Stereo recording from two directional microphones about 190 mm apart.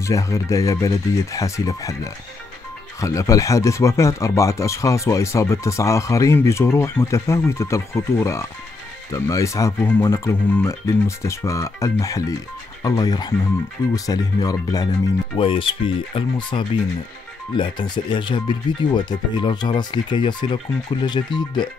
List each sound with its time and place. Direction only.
0.0 s speech: 15° left (ahead or behind)
3.0 s speech: 15° left (ahead or behind)